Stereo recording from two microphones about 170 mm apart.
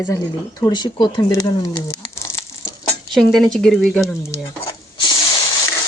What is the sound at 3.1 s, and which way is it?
Speech, centre (ahead or behind).